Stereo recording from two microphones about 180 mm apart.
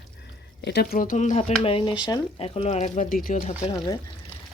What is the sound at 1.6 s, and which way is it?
Speech, 30° left (ahead or behind).